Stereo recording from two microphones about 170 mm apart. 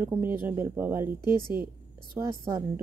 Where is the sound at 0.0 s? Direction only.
15° right (ahead or behind).